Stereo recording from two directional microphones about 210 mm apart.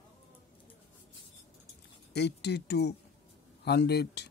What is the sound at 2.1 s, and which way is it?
Speech, 55° left (ahead or behind).